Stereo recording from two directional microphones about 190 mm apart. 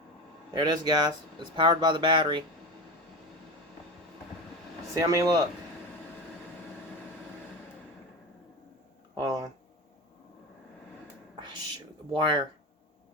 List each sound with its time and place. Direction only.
0.5 s speech: 20° right (ahead or behind)
4.9 s speech: 15° right (ahead or behind)
9.1 s a sound: 20° right (ahead or behind)
12.1 s speech: 25° right (ahead or behind)